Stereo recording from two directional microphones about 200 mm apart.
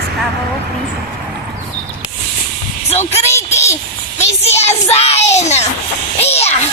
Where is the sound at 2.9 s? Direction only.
30° left (ahead or behind).